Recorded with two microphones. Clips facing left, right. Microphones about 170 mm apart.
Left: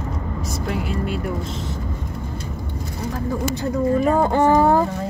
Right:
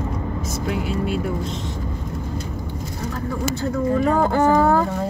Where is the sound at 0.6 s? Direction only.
Centre (ahead or behind).